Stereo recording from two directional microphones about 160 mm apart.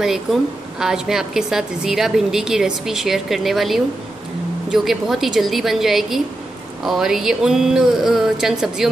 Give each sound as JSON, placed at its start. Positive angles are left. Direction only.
{"t": 0.0, "sound": "a woman's voice", "side_deg": -5}